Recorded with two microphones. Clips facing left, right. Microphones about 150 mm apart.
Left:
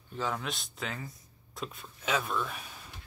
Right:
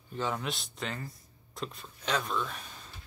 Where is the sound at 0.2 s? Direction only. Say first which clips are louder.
Right 1 dB; centre (ahead or behind).